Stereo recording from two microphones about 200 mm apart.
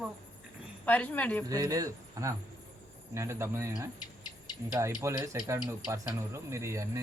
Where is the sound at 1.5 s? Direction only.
15° right (ahead or behind).